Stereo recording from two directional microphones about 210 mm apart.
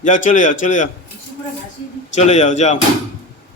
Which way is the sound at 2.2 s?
30° left (ahead or behind).